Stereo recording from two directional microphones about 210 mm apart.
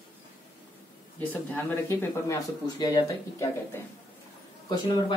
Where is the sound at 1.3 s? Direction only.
10° left (ahead or behind).